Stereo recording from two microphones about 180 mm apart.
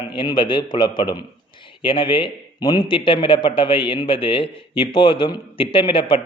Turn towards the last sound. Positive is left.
turn(degrees=30)  # may be behind; listen again after turning